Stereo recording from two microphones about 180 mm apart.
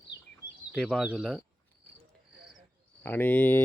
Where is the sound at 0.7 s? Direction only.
Centre (ahead or behind).